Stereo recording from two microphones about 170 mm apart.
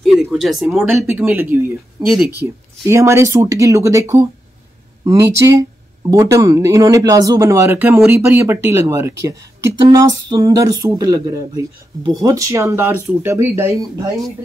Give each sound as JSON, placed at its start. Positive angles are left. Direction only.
{"t": 0.0, "sound": "speech", "side_deg": 0}
{"t": 2.9, "sound": "speech", "side_deg": -15}